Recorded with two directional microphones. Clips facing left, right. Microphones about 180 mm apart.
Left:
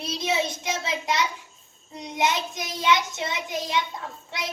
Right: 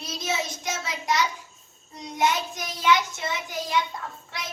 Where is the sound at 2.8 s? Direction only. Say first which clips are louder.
Right 1 dB; 20° left (ahead or behind).